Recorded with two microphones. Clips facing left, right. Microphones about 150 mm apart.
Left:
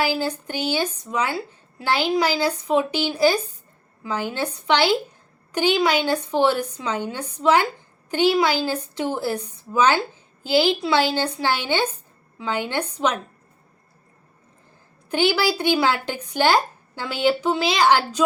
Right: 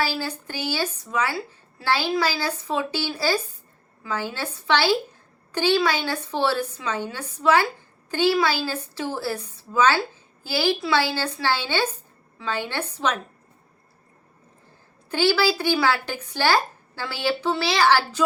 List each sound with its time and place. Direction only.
0.0 s speech: 15° left (ahead or behind)
15.1 s speech: 20° left (ahead or behind)